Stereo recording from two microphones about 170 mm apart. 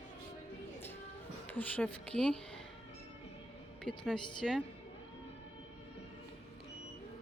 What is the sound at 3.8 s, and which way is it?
Speech, 5° left (ahead or behind).